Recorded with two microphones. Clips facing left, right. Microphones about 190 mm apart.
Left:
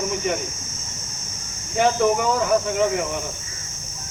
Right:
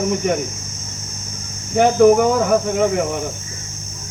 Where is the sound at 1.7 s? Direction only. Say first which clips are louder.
Right 7 dB; 50° right (ahead or behind).